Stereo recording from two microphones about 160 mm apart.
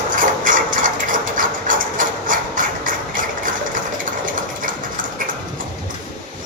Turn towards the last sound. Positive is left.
turn(degrees=-55)  # may be behind; listen again after turning